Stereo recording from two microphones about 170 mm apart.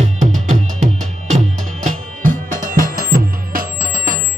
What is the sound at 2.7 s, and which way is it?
Music, 55° right (ahead or behind).